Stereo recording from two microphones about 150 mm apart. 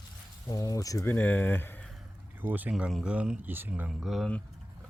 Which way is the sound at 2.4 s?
10° right (ahead or behind).